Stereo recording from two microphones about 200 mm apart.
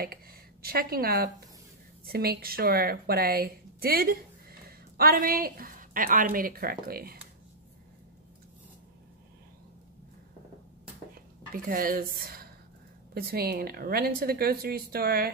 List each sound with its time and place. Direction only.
0.0 s speech: 50° right (ahead or behind)
11.5 s a woman's voice: 45° right (ahead or behind)